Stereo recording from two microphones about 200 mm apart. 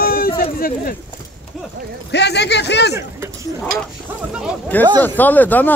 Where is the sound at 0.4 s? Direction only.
45° left (ahead or behind).